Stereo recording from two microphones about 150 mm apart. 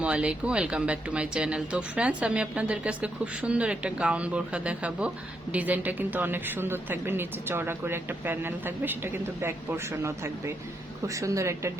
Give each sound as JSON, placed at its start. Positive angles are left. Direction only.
{"t": 0.0, "sound": "a woman's voice", "side_deg": -5}